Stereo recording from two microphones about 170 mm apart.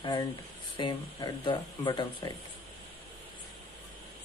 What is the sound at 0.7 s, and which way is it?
Speech, 30° left (ahead or behind).